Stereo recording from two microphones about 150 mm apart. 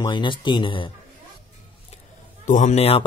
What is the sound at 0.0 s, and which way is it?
Speech, 30° left (ahead or behind).